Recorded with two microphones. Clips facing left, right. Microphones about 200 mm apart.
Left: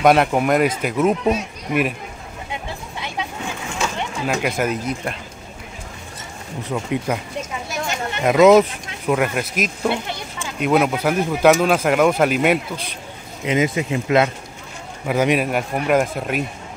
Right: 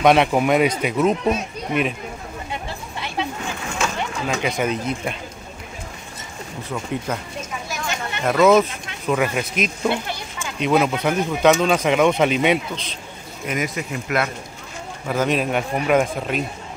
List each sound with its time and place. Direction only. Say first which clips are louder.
0.0 s speech: even; centre (ahead or behind)
4.3 s speech: left 2 dB; 5° left (ahead or behind)
6.7 s a man's voice: left 4 dB; 15° left (ahead or behind)
8.2 s speech: left 3 dB; 20° left (ahead or behind)
9.1 s speech: left 1 dB; 5° left (ahead or behind)
13.5 s speech: left 6 dB; 25° left (ahead or behind)
15.0 s a man's voice: left 2 dB; 10° left (ahead or behind)